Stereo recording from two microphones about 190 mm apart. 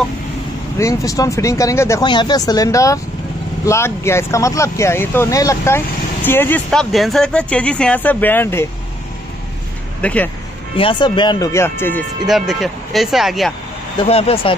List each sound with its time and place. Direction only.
0.7 s speech: 15° left (ahead or behind)
10.0 s speech: 10° left (ahead or behind)
10.8 s speech: 25° left (ahead or behind)
12.3 s speech: centre (ahead or behind)
14.0 s speech: 30° left (ahead or behind)